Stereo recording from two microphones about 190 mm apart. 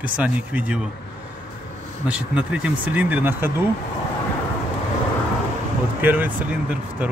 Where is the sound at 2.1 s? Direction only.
5° right (ahead or behind).